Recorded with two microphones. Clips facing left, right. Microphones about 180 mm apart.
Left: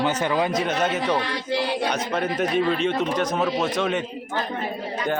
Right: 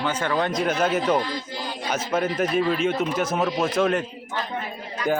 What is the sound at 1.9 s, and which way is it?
A man's voice, 5° right (ahead or behind).